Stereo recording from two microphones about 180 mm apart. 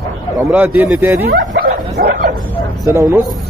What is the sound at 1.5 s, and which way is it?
Bow-wow, 65° right (ahead or behind).